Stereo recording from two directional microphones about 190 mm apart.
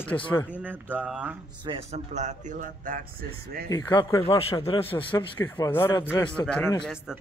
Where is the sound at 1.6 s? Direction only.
30° right (ahead or behind); by 3.3 s 45° right (ahead or behind).